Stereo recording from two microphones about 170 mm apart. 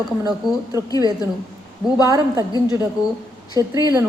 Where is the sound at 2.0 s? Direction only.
20° right (ahead or behind).